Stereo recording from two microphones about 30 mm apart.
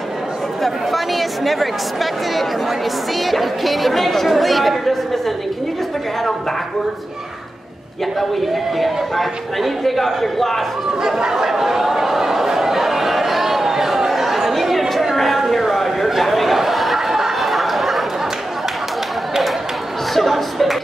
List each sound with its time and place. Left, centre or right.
0.6 s speech: centre
8.2 s speech: centre
11.0 s speech: right
11.3 s a sound: centre
17.4 s chatter: centre
20.2 s chuckle: centre